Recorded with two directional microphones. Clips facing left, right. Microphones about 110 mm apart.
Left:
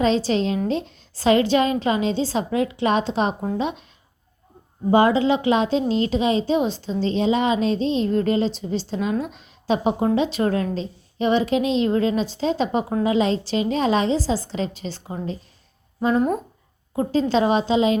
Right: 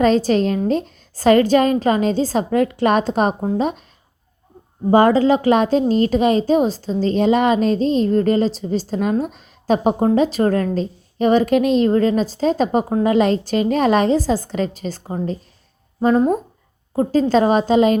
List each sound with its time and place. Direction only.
0.0 s a woman's voice: 50° right (ahead or behind)
4.9 s a woman's voice: 45° right (ahead or behind)